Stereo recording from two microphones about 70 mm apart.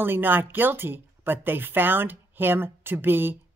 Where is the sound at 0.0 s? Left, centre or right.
Right.